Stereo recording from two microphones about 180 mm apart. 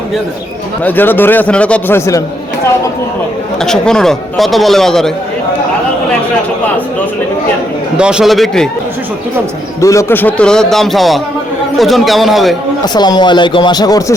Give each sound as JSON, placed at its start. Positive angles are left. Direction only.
{"t": 0.9, "sound": "a man's voice", "side_deg": 10}
{"t": 3.6, "sound": "a man's voice", "side_deg": 5}
{"t": 7.9, "sound": "a man's voice", "side_deg": -5}
{"t": 9.8, "sound": "a man's voice", "side_deg": 15}
{"t": 12.9, "sound": "speech", "side_deg": 25}